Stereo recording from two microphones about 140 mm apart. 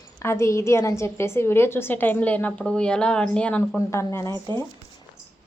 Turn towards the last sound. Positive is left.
turn(degrees=20)  # may be behind; listen again after turning